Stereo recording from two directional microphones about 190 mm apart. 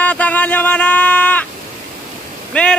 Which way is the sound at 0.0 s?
10° left (ahead or behind).